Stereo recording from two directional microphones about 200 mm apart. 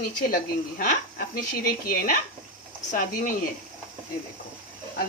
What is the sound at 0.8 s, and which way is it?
Speech, 45° left (ahead or behind).